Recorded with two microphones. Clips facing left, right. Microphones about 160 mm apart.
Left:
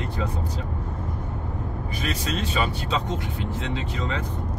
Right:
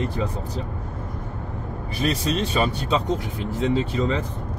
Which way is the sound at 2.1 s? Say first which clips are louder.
Right 5 dB; 40° right (ahead or behind).